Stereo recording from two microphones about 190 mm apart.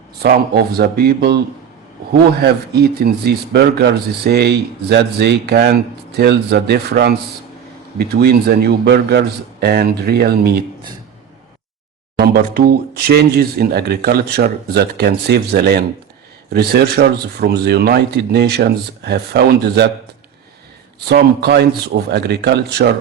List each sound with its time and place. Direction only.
0.2 s speech: 55° right (ahead or behind)
2.4 s speech: 60° right (ahead or behind)
12.1 s speech: 55° right (ahead or behind)
21.1 s speech: 60° right (ahead or behind)